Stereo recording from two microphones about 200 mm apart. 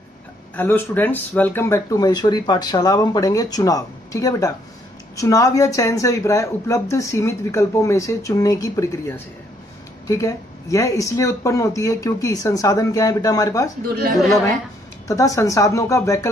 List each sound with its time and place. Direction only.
0.6 s speech: 10° left (ahead or behind)
15.0 s speech: 15° left (ahead or behind)